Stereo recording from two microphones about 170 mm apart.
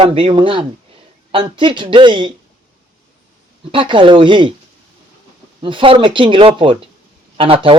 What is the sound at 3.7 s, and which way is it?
Speech, 30° right (ahead or behind).